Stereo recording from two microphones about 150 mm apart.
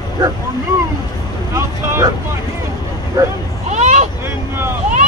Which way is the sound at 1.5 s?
20° right (ahead or behind).